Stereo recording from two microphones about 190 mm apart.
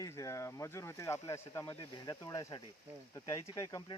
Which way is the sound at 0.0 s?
15° left (ahead or behind).